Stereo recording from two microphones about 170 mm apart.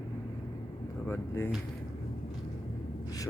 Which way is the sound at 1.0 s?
15° left (ahead or behind).